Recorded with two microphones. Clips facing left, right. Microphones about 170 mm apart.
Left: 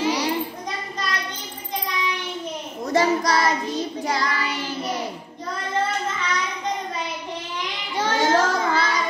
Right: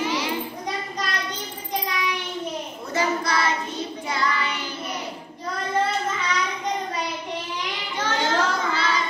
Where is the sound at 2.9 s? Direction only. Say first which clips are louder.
Left 5 dB; 40° left (ahead or behind).